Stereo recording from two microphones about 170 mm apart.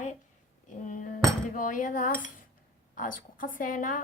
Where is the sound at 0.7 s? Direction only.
50° left (ahead or behind).